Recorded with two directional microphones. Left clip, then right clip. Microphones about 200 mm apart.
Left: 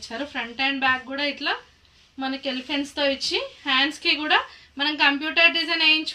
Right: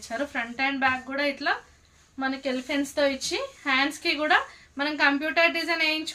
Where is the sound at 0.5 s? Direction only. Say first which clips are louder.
Left 3 dB; 25° right (ahead or behind).